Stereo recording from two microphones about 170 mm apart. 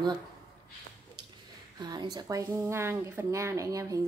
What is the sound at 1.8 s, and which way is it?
Speech, 25° right (ahead or behind).